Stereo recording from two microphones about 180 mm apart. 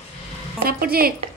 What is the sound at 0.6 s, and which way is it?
Speech, 55° right (ahead or behind).